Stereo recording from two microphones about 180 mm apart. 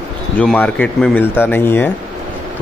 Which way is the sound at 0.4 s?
5° left (ahead or behind).